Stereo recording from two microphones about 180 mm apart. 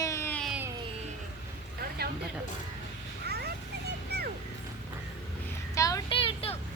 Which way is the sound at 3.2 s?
65° right (ahead or behind).